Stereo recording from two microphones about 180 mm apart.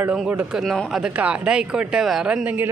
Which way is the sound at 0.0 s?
5° right (ahead or behind).